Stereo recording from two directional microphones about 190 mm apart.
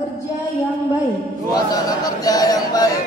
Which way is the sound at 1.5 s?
20° left (ahead or behind).